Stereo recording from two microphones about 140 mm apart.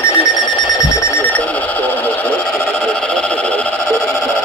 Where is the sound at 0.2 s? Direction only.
30° left (ahead or behind).